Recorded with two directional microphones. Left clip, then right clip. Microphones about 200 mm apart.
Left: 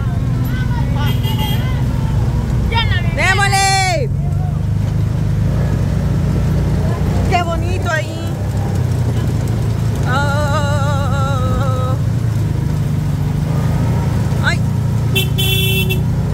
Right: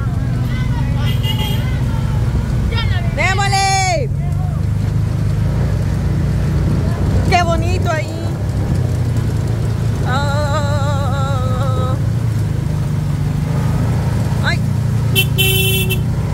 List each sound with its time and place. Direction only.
3.2 s vehicle: 5° left (ahead or behind)
7.2 s vehicle: 15° right (ahead or behind)